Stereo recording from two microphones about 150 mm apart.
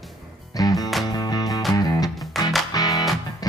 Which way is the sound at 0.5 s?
25° left (ahead or behind).